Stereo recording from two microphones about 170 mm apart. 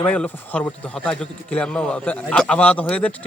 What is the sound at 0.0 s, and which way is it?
A man's voice, 5° left (ahead or behind).